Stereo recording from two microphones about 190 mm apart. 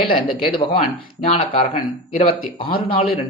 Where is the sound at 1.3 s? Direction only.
30° left (ahead or behind).